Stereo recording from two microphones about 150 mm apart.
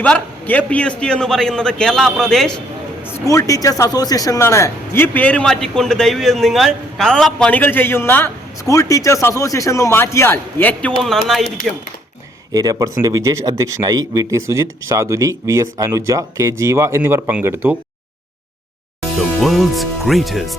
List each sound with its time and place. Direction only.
0.0 s a man's voice: 10° left (ahead or behind)
3.1 s a man's voice: 20° left (ahead or behind); by 11.4 s centre (ahead or behind)
12.5 s speech: 25° right (ahead or behind)
19.4 s a man's voice: centre (ahead or behind)